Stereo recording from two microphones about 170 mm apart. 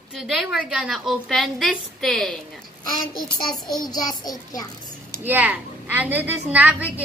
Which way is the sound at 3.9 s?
25° left (ahead or behind).